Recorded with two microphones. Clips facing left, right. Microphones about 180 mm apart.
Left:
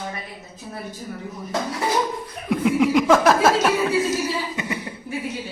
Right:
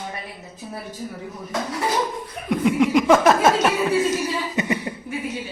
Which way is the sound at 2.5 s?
Centre (ahead or behind).